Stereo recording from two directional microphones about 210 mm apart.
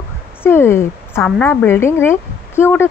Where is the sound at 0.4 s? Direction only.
10° left (ahead or behind).